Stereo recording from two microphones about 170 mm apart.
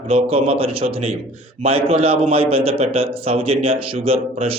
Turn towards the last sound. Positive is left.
turn(degrees=-35)  # may be behind; listen again after turning